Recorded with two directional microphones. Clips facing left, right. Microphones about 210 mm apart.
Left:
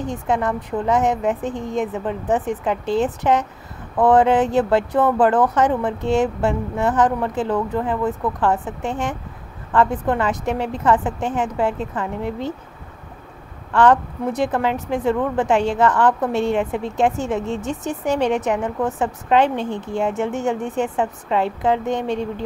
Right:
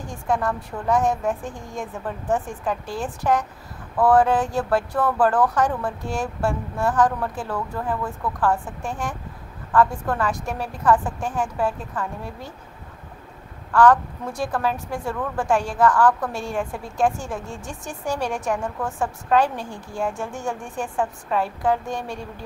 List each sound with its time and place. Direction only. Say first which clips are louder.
0.0 s a woman's voice: left 3 dB; 20° left (ahead or behind)
13.7 s a woman's voice: left 1 dB; 20° left (ahead or behind)